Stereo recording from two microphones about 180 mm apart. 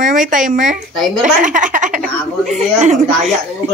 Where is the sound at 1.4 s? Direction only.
45° right (ahead or behind).